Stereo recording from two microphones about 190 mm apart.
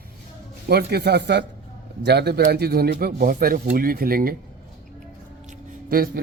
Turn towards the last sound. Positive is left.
turn(degrees=-50)  # may be behind; listen again after turning